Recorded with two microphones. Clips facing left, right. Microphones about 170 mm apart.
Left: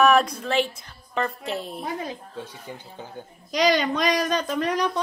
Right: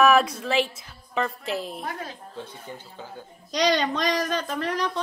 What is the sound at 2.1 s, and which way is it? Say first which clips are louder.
A child's voice: left 3 dB; 10° left (ahead or behind).